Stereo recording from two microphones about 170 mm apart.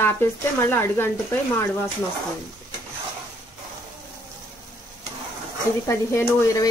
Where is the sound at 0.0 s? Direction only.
15° left (ahead or behind).